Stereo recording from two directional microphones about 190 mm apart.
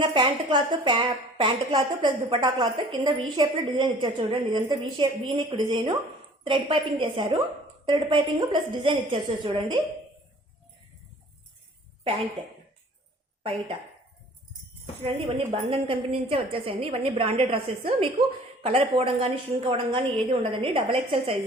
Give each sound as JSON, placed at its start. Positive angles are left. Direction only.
{"t": 0.0, "sound": "a woman's voice", "side_deg": -25}
{"t": 13.4, "sound": "speech", "side_deg": -30}
{"t": 15.5, "sound": "a woman's voice", "side_deg": -30}